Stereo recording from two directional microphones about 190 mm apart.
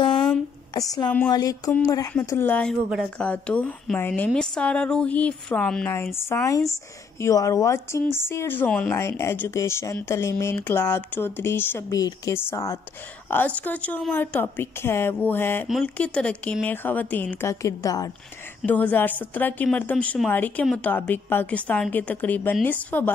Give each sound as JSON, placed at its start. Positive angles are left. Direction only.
{"t": 0.7, "sound": "a sound", "side_deg": 20}
{"t": 2.1, "sound": "a woman's voice", "side_deg": 10}
{"t": 18.6, "sound": "speech", "side_deg": 10}